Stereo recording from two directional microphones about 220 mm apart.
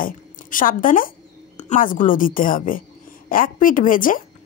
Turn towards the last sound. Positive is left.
turn(degrees=40)  # may be behind; listen again after turning